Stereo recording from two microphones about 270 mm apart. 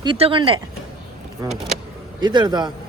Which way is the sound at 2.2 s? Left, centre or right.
Centre.